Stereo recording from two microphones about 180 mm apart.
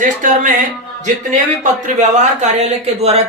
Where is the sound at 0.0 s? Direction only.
45° right (ahead or behind).